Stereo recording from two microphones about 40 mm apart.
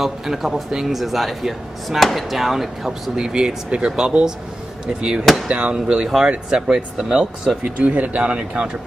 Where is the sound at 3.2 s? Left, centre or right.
Centre.